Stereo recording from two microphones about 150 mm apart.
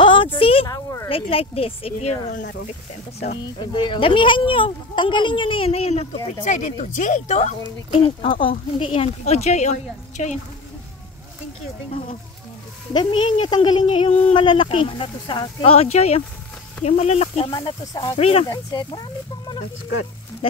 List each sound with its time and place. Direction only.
0.0 s a sound: 35° left (ahead or behind)
0.7 s a sound: 20° left (ahead or behind)
1.0 s speech: 40° left (ahead or behind)
3.5 s speech: 35° left (ahead or behind); by 10.4 s 55° left (ahead or behind)
11.9 s speech: 50° left (ahead or behind)
12.9 s speech: 30° left (ahead or behind)
17.5 s speech: 30° left (ahead or behind)
18.5 s speech: 25° left (ahead or behind)